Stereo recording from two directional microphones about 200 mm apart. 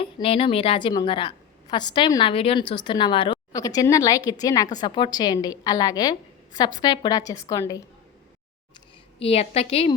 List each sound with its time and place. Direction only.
0.0 s a woman's voice: 30° left (ahead or behind)
9.1 s a woman's voice: 30° left (ahead or behind)